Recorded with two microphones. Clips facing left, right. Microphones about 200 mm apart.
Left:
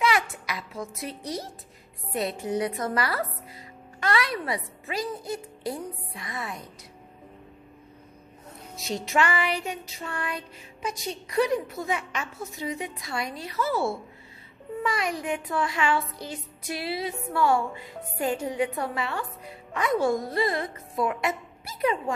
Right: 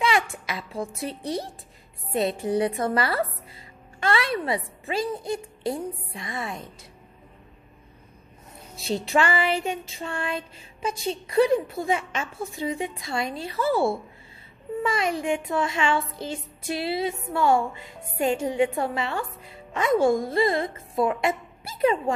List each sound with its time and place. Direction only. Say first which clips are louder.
0.0 s a sound: right 1 dB; 25° right (ahead or behind)
2.1 s a child's voice: right 4 dB; 30° right (ahead or behind)
8.7 s a child's voice: right 3 dB; 30° right (ahead or behind)
14.8 s a child's voice: right 3 dB; 25° right (ahead or behind)